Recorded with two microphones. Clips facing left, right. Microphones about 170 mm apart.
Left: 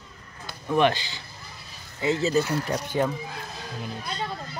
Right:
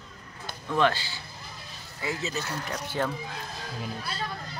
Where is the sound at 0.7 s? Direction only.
20° left (ahead or behind); by 2.8 s 35° left (ahead or behind).